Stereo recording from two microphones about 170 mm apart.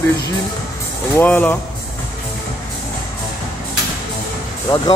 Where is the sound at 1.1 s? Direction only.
10° left (ahead or behind).